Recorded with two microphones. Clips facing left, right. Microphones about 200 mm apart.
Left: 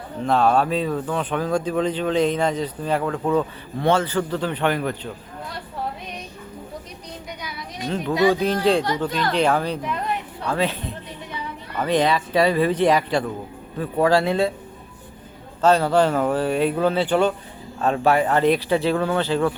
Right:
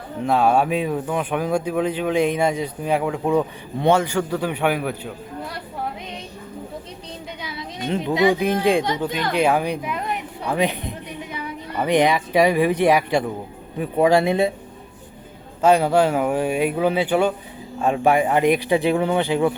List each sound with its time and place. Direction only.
0.2 s speech: 10° right (ahead or behind)
7.4 s a child's voice: 25° right (ahead or behind)
15.6 s speech: 10° right (ahead or behind)